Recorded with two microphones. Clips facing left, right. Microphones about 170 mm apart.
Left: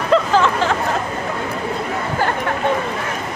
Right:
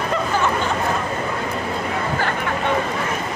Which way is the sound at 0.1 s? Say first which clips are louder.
Left 8 dB; 90° left.